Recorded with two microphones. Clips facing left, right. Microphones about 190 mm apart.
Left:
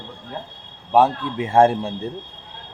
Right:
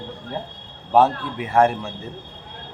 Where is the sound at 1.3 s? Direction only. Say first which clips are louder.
Left 4 dB; 25° left (ahead or behind).